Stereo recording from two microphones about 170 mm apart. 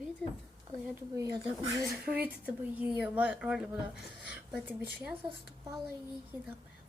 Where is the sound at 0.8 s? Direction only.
15° right (ahead or behind).